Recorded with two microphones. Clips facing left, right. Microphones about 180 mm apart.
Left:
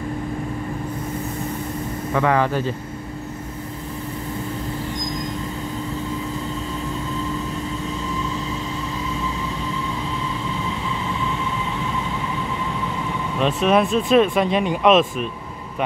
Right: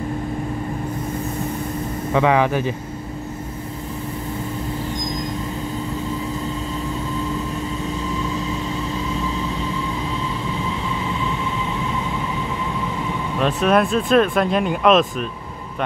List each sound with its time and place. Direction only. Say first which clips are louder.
2.1 s speech: right 2 dB; 15° right (ahead or behind)
13.4 s speech: even; centre (ahead or behind)